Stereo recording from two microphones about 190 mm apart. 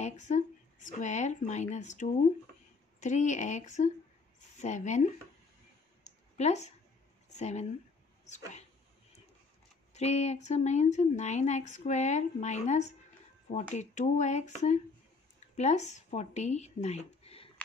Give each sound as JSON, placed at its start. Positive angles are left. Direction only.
{"t": 0.0, "sound": "speech", "side_deg": 40}
{"t": 6.0, "sound": "a sound", "side_deg": 35}
{"t": 7.3, "sound": "speech", "side_deg": 35}
{"t": 9.9, "sound": "speech", "side_deg": 35}